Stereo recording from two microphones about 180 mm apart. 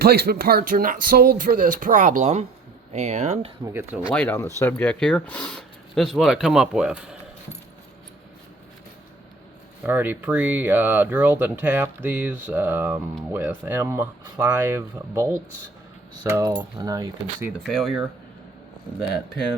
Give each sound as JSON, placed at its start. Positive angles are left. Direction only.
{"t": 0.0, "sound": "speech", "side_deg": -60}
{"t": 3.6, "sound": "speech", "side_deg": -15}
{"t": 4.1, "sound": "speech", "side_deg": 10}
{"t": 9.8, "sound": "speech", "side_deg": -10}
{"t": 17.7, "sound": "speech", "side_deg": 0}